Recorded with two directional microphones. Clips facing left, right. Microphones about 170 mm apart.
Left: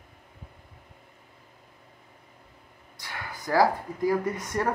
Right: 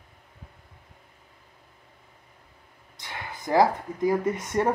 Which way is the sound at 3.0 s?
20° right (ahead or behind).